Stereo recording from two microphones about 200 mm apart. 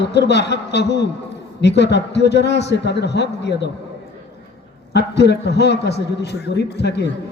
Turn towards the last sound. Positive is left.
turn(degrees=55)  # may be behind; listen again after turning